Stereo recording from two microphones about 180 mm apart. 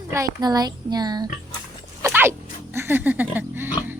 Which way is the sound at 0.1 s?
20° right (ahead or behind).